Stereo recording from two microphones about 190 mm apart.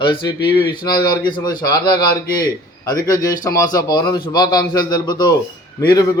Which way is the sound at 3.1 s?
20° left (ahead or behind).